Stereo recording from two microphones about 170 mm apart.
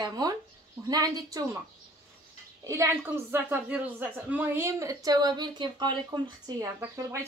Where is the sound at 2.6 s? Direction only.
20° right (ahead or behind).